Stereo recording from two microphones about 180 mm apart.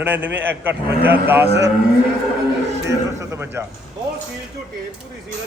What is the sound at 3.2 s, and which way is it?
Speech, 15° right (ahead or behind).